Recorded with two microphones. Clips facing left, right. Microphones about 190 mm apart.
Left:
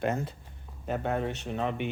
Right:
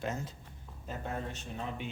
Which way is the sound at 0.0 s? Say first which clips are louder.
Left 7 dB; 60° left (ahead or behind).